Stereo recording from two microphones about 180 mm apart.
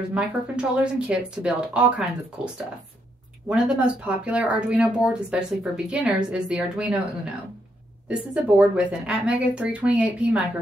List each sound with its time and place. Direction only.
0.1 s speech: 5° right (ahead or behind)
8.1 s a woman's voice: 5° right (ahead or behind)